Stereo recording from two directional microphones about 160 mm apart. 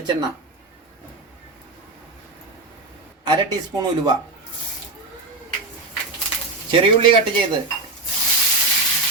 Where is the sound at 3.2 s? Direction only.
25° right (ahead or behind).